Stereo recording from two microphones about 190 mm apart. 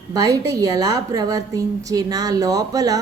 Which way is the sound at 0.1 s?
20° right (ahead or behind).